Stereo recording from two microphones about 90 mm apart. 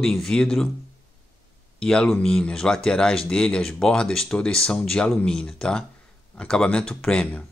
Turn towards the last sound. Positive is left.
turn(degrees=10)  # may be behind; listen again after turning